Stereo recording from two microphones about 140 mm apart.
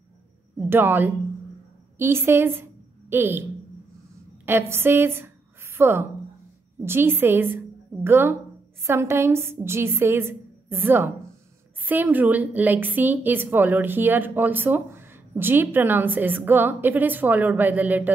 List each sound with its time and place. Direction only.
0.6 s a woman's voice: 15° right (ahead or behind)
4.5 s a woman's voice: 15° right (ahead or behind)